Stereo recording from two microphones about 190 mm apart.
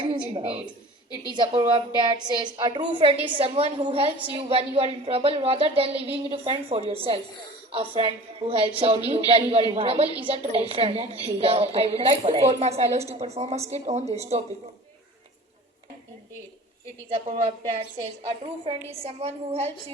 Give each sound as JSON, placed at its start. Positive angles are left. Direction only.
{"t": 0.0, "sound": "a woman's voice", "side_deg": -30}
{"t": 17.1, "sound": "a woman's voice", "side_deg": -30}